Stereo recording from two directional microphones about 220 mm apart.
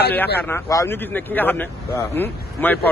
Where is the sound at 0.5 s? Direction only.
15° left (ahead or behind).